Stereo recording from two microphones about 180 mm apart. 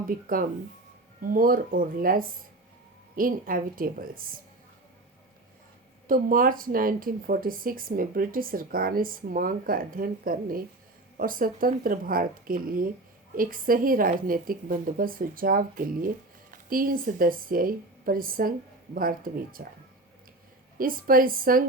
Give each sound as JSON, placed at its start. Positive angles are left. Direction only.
{"t": 0.1, "sound": "a woman's voice", "side_deg": -50}
{"t": 6.1, "sound": "a woman's voice", "side_deg": -50}
{"t": 20.7, "sound": "a woman's voice", "side_deg": -50}